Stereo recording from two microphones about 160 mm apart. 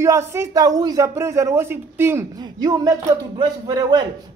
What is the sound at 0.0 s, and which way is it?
Speech, 15° right (ahead or behind).